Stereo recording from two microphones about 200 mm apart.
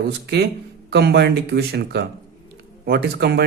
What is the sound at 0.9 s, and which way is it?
Speech, 55° right (ahead or behind).